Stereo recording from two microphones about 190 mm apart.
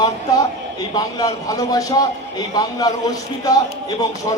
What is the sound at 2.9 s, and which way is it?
Speech, 20° left (ahead or behind).